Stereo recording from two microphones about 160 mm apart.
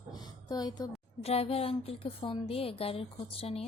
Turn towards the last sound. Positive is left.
turn(degrees=35)  # may be behind; listen again after turning